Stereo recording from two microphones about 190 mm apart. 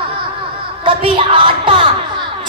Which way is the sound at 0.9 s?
30° right (ahead or behind).